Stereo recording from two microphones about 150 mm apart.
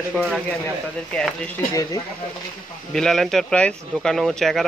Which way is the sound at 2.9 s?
5° left (ahead or behind).